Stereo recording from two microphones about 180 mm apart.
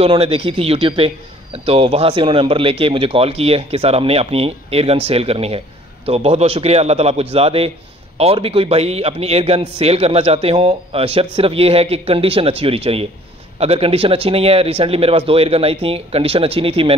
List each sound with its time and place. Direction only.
0.0 s a man's voice: 30° right (ahead or behind)